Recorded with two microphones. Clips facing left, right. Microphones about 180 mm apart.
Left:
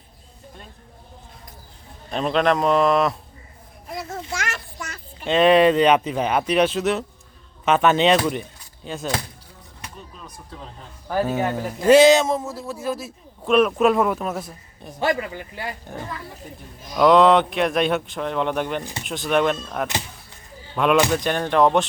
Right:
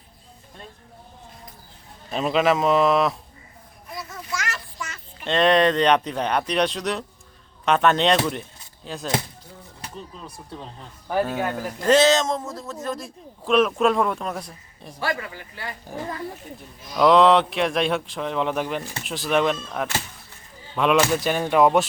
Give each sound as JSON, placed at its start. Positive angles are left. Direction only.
{"t": 2.0, "sound": "speech", "side_deg": -5}
{"t": 4.3, "sound": "a sound", "side_deg": 55}
{"t": 5.2, "sound": "speech", "side_deg": 5}
{"t": 9.8, "sound": "speech", "side_deg": -30}
{"t": 11.2, "sound": "speech", "side_deg": 5}
{"t": 14.9, "sound": "speech", "side_deg": 20}
{"t": 16.9, "sound": "speech", "side_deg": 0}
{"t": 18.8, "sound": "speech", "side_deg": 15}
{"t": 19.0, "sound": "speech", "side_deg": 0}